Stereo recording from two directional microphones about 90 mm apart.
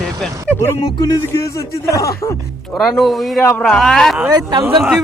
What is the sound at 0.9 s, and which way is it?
Speech, 45° left (ahead or behind).